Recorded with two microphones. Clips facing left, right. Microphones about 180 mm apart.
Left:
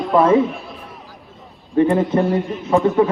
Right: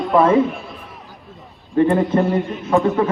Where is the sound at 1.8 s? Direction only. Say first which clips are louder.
Right 1 dB; centre (ahead or behind).